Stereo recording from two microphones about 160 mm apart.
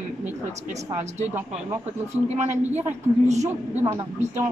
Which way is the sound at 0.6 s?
50° right (ahead or behind).